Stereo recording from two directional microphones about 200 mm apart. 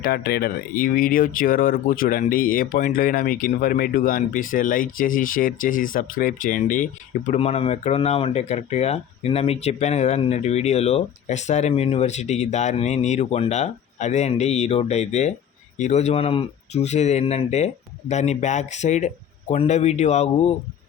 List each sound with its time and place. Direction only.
0.0 s speech: 50° left (ahead or behind); by 20.3 s 35° left (ahead or behind)